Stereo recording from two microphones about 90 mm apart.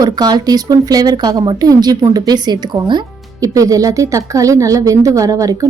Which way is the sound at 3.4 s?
40° right (ahead or behind).